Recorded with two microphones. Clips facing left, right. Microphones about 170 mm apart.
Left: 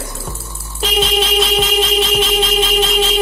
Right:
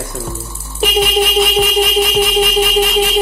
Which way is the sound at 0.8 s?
15° right (ahead or behind).